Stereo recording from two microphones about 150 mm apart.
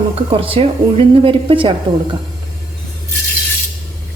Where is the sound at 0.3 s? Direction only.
40° right (ahead or behind).